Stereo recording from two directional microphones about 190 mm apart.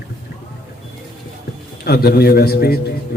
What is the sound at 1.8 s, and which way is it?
A man's voice, 55° left (ahead or behind).